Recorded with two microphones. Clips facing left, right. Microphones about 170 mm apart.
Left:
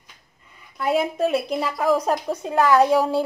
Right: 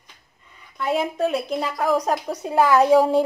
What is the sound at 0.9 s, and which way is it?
A woman's voice, centre (ahead or behind).